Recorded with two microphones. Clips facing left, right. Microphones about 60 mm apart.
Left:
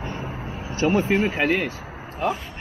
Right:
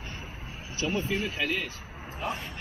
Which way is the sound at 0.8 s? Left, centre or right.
Left.